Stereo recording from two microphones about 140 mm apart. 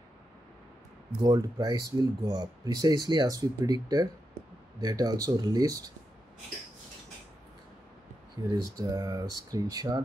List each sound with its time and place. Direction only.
1.2 s speech: 25° right (ahead or behind)
8.4 s speech: 20° right (ahead or behind)